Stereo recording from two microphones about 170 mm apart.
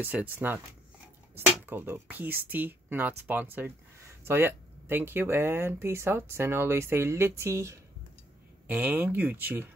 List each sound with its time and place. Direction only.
0.0 s speech: 10° right (ahead or behind)